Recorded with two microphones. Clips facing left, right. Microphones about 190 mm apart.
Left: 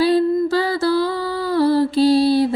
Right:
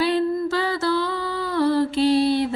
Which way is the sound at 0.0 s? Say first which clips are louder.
Left 5 dB; 35° left (ahead or behind).